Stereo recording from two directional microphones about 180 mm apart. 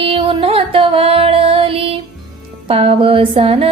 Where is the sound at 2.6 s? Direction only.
30° right (ahead or behind).